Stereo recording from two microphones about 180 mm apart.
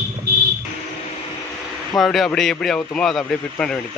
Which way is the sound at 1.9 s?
Centre (ahead or behind).